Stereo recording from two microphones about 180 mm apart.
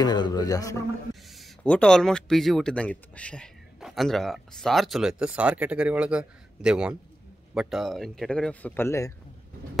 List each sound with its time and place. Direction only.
0.0 s speech: 20° left (ahead or behind)
1.3 s speech: 5° left (ahead or behind)